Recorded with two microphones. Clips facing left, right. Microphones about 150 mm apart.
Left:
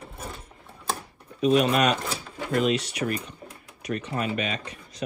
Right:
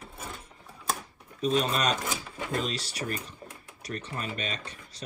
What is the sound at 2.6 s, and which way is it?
Speech, 35° right (ahead or behind).